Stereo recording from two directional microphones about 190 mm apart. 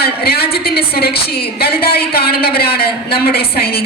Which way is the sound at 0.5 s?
55° left (ahead or behind).